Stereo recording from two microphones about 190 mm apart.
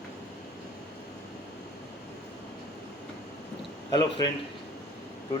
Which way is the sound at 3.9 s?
20° left (ahead or behind).